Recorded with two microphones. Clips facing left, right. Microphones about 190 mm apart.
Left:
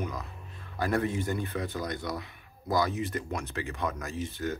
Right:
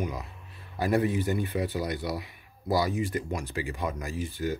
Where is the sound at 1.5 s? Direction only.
15° right (ahead or behind).